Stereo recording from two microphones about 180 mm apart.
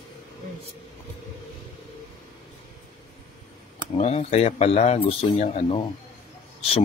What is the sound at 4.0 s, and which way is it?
Speech, 35° left (ahead or behind).